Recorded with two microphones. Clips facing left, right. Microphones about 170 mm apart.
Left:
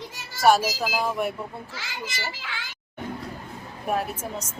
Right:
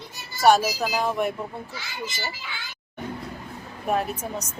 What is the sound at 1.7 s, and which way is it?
A child's voice, 90° left.